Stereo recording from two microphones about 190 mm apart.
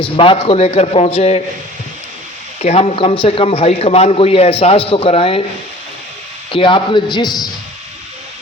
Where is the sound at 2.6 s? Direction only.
35° left (ahead or behind).